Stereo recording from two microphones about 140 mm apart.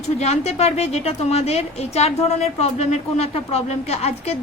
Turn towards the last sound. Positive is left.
turn(degrees=50)  # may be behind; listen again after turning